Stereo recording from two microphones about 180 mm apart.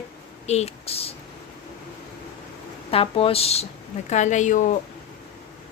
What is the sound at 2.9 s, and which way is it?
Speech, 30° left (ahead or behind).